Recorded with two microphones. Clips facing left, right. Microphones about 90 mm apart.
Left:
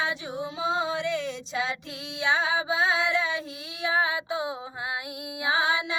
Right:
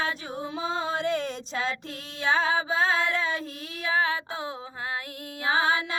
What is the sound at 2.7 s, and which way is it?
Music, 45° right (ahead or behind).